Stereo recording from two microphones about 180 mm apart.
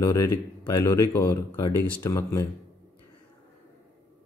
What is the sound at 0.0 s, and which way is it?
Speech, 20° left (ahead or behind).